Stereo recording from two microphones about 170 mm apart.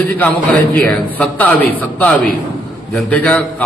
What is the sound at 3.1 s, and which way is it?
Speech, 5° left (ahead or behind).